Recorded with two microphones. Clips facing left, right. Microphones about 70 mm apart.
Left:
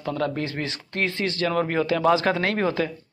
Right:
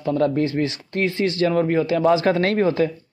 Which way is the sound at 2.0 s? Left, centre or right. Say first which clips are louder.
Right 2 dB; left.